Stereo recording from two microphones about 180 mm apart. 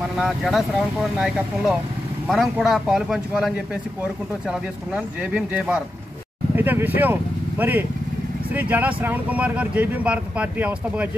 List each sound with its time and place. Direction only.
0.2 s speech: centre (ahead or behind)